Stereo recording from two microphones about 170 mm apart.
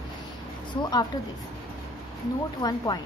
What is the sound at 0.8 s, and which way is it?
Speech, 25° left (ahead or behind).